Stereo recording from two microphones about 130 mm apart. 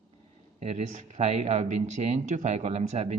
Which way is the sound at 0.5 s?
55° right (ahead or behind).